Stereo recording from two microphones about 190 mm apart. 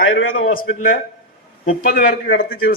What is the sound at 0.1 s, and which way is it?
Speech, 90° left.